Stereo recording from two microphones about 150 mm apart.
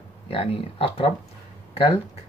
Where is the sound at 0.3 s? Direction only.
40° left (ahead or behind).